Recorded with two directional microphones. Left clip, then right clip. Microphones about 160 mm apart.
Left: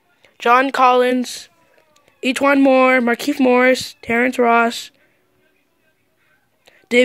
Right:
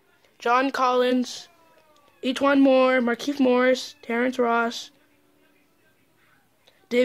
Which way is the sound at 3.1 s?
30° left (ahead or behind).